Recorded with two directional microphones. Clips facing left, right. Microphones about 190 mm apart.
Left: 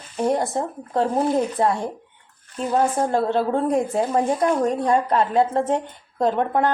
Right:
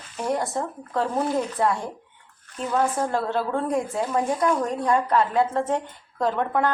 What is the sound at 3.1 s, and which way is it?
A woman's voice, 25° left (ahead or behind).